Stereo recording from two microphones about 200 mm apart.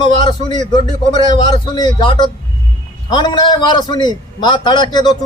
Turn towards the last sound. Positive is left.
turn(degrees=20)  # may be behind; listen again after turning